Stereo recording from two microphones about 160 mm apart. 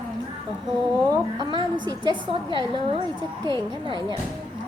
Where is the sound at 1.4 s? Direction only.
30° right (ahead or behind).